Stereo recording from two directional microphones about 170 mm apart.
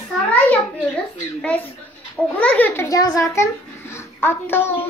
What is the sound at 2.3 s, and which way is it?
A child's voice, 10° left (ahead or behind).